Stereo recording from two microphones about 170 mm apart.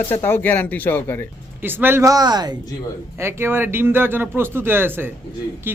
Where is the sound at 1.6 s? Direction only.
10° right (ahead or behind).